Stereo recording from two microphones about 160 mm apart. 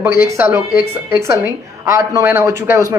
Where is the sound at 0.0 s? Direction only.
15° right (ahead or behind).